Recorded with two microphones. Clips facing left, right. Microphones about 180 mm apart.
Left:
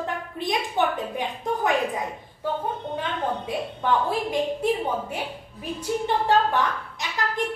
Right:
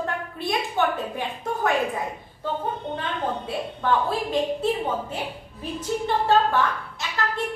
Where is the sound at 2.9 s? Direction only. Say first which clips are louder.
Even; 15° left (ahead or behind).